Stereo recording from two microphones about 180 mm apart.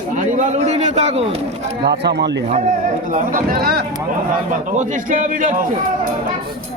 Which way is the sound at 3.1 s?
50° right (ahead or behind).